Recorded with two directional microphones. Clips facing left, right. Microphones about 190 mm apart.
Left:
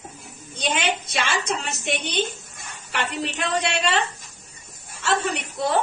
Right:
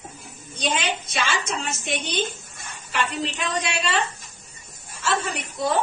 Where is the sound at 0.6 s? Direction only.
65° left (ahead or behind).